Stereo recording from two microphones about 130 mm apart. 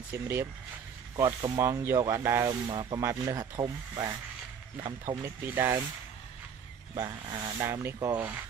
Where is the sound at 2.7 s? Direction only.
35° right (ahead or behind).